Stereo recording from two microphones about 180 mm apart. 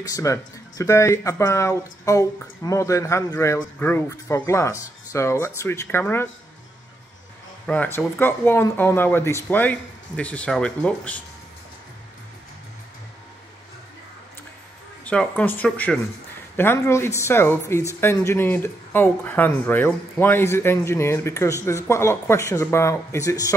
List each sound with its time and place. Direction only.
0.0 s speech: 20° left (ahead or behind)
7.6 s speech: 10° left (ahead or behind)
15.0 s speech: 5° left (ahead or behind)